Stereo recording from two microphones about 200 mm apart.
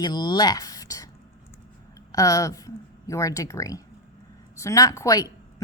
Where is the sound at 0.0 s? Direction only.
20° left (ahead or behind).